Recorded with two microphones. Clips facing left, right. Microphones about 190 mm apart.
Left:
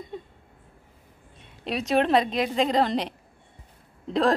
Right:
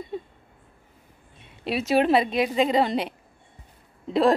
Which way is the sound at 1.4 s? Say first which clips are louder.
Right 2 dB; 5° right (ahead or behind).